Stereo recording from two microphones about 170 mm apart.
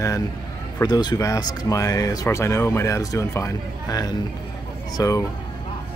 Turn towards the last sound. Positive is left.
turn(degrees=20)  # may be behind; listen again after turning